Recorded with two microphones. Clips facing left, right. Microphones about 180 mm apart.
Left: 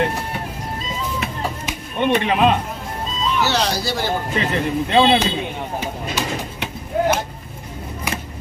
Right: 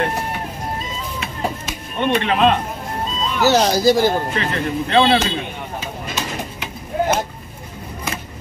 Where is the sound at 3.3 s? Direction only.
45° right (ahead or behind).